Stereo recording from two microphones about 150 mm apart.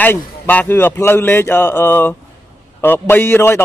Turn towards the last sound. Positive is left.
turn(degrees=15)  # may be behind; listen again after turning